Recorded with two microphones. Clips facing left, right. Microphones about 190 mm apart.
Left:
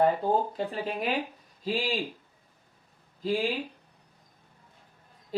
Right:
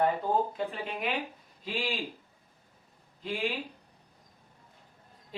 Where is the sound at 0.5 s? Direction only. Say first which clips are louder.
Left 3 dB; 35° left (ahead or behind).